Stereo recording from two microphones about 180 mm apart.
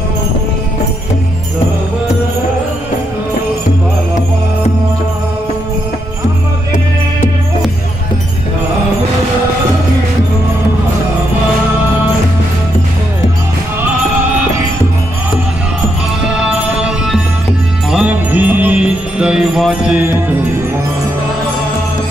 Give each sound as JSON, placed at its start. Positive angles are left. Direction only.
{"t": 16.3, "sound": "music", "side_deg": -5}